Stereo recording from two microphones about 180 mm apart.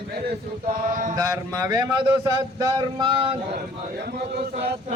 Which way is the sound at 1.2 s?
20° right (ahead or behind).